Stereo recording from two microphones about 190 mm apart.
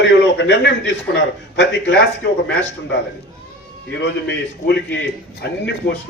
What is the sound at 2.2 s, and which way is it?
Speech, 60° left (ahead or behind).